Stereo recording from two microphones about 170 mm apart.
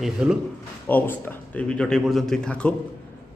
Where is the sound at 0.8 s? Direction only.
10° left (ahead or behind).